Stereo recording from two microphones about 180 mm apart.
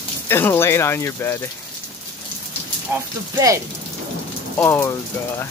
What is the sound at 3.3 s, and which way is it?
Speech, 20° right (ahead or behind).